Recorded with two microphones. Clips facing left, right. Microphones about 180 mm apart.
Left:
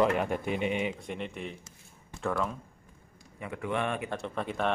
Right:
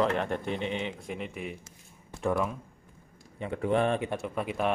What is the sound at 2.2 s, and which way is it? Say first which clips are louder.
Speech: right 3 dB; 15° right (ahead or behind).